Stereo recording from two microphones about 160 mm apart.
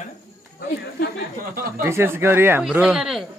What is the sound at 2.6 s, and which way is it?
Speech, 5° right (ahead or behind).